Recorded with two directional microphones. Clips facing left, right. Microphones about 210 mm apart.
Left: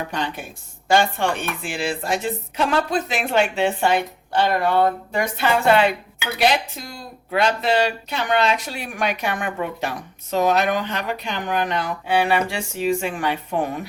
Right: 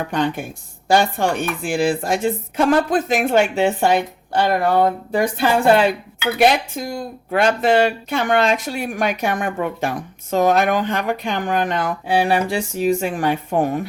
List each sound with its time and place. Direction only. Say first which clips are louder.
0.1 s speech: right 7 dB; 50° right (ahead or behind)
0.9 s speech: right 2 dB; 40° right (ahead or behind)
5.1 s speech: right 4 dB; 35° right (ahead or behind)
6.4 s speech: right 4 dB; 50° right (ahead or behind)